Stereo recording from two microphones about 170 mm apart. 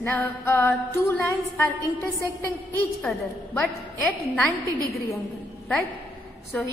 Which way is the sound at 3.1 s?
10° left (ahead or behind).